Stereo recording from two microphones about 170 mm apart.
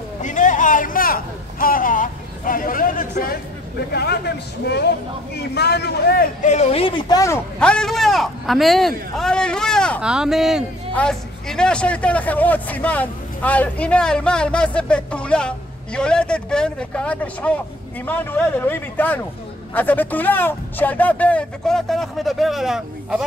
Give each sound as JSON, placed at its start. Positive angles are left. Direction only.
{"t": 0.2, "sound": "a sound", "side_deg": 45}
{"t": 3.9, "sound": "speech", "side_deg": 75}
{"t": 7.5, "sound": "a man's voice", "side_deg": 5}